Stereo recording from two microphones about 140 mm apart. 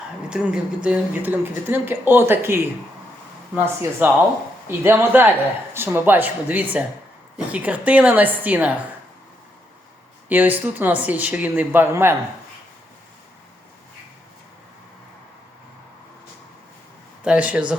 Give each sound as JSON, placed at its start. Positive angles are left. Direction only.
{"t": 0.3, "sound": "a woman's voice", "side_deg": -5}
{"t": 10.2, "sound": "a woman's voice", "side_deg": -10}
{"t": 17.2, "sound": "a woman's voice", "side_deg": -10}